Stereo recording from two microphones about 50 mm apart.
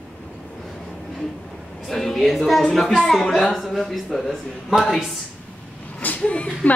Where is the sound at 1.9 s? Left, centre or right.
Centre.